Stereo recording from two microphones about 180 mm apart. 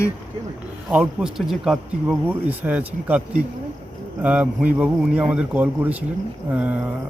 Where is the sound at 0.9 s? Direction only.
5° right (ahead or behind).